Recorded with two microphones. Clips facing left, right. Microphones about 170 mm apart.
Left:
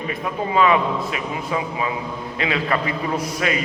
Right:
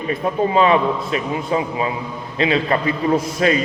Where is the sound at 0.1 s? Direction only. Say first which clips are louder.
Right 6 dB; 30° right (ahead or behind).